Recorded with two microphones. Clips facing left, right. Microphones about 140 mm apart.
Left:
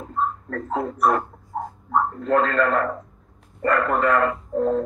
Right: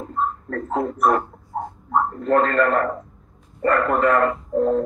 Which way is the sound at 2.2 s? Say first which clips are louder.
Right 3 dB; 45° right (ahead or behind).